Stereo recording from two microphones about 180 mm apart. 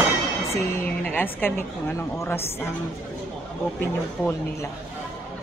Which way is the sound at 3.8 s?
10° left (ahead or behind).